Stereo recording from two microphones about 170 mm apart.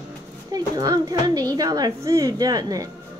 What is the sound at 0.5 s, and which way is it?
A woman's voice, 20° right (ahead or behind).